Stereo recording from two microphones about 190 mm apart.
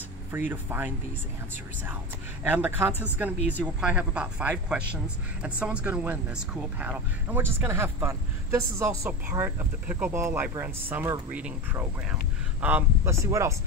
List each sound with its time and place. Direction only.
0.5 s speech: 10° right (ahead or behind)
2.4 s speech: 10° right (ahead or behind)